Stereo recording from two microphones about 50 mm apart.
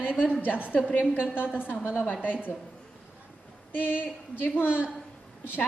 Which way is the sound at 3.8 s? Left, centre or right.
Left.